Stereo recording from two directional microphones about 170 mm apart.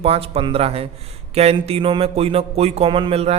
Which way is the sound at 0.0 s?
35° right (ahead or behind).